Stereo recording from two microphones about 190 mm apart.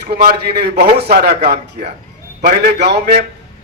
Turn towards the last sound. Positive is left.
turn(degrees=-55)  # may be behind; listen again after turning